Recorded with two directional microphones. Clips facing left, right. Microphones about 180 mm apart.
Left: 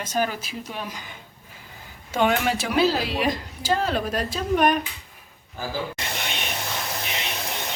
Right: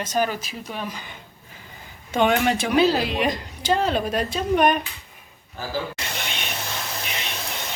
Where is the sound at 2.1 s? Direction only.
5° left (ahead or behind).